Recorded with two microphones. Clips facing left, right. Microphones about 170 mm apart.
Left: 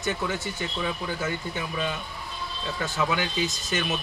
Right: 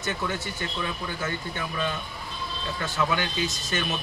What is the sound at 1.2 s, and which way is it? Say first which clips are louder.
Speech: left 1 dB; 15° left (ahead or behind).